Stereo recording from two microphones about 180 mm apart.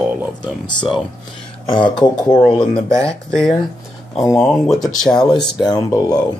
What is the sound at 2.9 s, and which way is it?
Speech, 15° right (ahead or behind).